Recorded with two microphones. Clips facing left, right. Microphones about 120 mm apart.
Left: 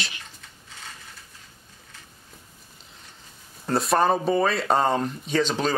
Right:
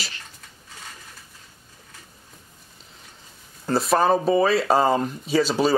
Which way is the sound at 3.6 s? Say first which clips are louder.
Right 2 dB; centre (ahead or behind).